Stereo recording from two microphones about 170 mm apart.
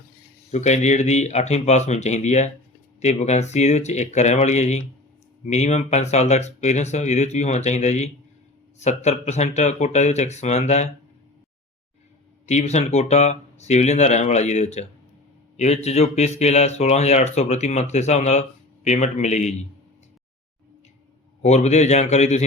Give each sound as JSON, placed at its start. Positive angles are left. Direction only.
{"t": 0.5, "sound": "speech", "side_deg": 40}
{"t": 12.5, "sound": "speech", "side_deg": 40}
{"t": 21.4, "sound": "speech", "side_deg": 40}